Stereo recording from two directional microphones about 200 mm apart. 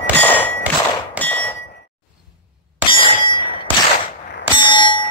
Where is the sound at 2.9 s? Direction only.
25° left (ahead or behind).